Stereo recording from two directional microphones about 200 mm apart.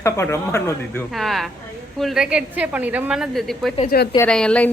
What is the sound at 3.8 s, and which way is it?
Speech, 50° left (ahead or behind).